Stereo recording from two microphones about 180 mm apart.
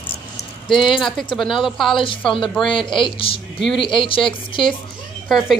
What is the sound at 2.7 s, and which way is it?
Speech, 25° left (ahead or behind).